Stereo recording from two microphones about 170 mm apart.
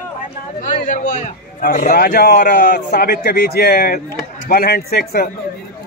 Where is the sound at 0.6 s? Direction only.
50° left (ahead or behind); by 5.3 s 65° left (ahead or behind).